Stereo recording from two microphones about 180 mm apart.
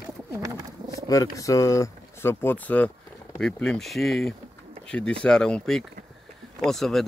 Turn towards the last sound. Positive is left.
turn(degrees=0)  # may be behind; listen again after turning